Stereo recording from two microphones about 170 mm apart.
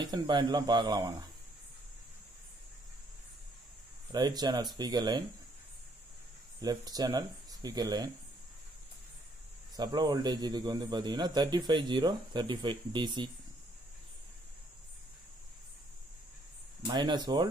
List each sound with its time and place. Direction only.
0.0 s a man's voice: 25° right (ahead or behind)
4.1 s a man's voice: 25° right (ahead or behind)
6.6 s a man's voice: 20° right (ahead or behind)
9.8 s a man's voice: 25° right (ahead or behind)
16.8 s a man's voice: 25° right (ahead or behind)